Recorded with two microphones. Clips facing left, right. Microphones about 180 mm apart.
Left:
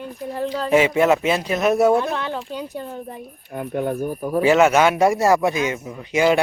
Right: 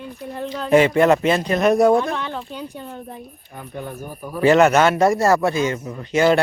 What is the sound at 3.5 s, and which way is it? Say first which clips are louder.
Speech: left 9 dB; 60° left (ahead or behind).